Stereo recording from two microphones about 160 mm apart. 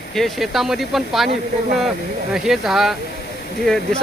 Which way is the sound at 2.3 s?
Centre (ahead or behind).